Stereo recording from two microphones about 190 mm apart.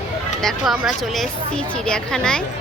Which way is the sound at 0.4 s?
Centre (ahead or behind).